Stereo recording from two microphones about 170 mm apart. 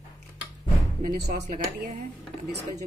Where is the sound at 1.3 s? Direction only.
45° right (ahead or behind).